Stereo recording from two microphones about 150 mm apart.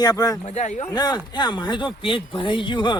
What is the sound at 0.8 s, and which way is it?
A man's voice, 25° left (ahead or behind).